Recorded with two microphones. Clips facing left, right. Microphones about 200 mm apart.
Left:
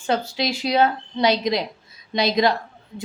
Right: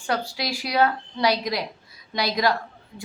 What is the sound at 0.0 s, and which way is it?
A woman's voice, 20° left (ahead or behind).